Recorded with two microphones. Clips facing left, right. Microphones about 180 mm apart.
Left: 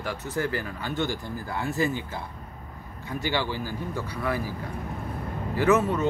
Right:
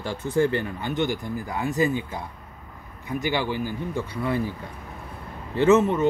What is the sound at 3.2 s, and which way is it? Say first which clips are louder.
Speech: right 2 dB; 20° right (ahead or behind).